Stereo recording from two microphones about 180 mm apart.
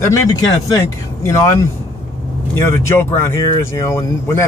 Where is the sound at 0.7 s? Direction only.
15° left (ahead or behind).